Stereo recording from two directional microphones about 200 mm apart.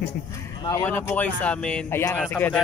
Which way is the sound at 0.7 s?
10° left (ahead or behind).